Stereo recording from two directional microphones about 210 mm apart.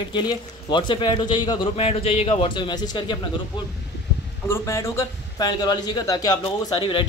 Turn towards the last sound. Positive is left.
turn(degrees=25)  # may be behind; listen again after turning